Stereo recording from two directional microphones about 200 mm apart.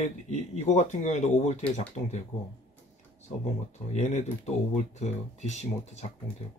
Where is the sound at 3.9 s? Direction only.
35° left (ahead or behind).